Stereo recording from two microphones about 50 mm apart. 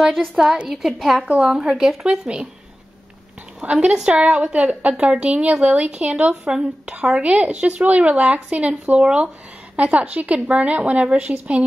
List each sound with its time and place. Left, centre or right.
0.0 s a woman's voice: centre
0.5 s a woman's voice: right
1.0 s a woman's voice: centre
1.4 s speech: centre
3.6 s a woman's voice: centre
7.7 s a woman's voice: right